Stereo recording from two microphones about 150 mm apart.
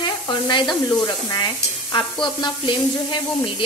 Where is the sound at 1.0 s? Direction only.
25° left (ahead or behind).